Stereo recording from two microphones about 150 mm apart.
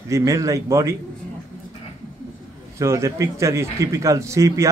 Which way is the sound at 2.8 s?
20° right (ahead or behind).